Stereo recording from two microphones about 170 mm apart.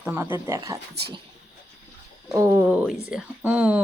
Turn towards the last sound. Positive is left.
turn(degrees=-10)  # may be behind; listen again after turning